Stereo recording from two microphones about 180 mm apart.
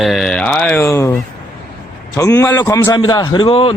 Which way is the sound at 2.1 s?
20° left (ahead or behind).